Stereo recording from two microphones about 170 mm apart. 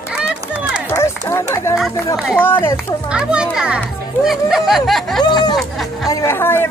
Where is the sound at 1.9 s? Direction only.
20° left (ahead or behind).